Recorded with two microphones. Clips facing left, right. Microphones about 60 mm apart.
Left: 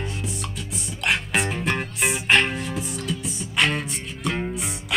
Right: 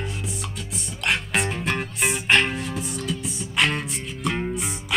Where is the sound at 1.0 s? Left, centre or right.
Centre.